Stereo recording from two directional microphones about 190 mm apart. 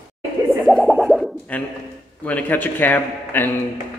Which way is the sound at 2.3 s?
10° left (ahead or behind).